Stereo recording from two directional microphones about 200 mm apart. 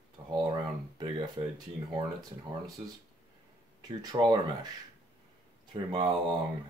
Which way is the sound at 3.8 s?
20° right (ahead or behind).